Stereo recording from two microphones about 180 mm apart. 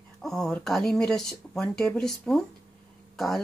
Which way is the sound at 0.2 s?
Centre (ahead or behind).